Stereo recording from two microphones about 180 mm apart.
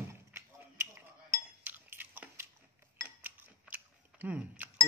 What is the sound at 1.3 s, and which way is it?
Chink, 10° right (ahead or behind).